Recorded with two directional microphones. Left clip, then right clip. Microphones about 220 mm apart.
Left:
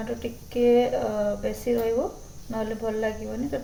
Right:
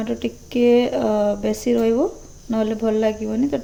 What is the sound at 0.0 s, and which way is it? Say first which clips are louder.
Speech: right 6 dB; 45° right (ahead or behind).